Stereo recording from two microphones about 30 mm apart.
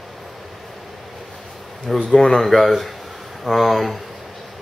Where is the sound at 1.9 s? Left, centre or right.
Centre.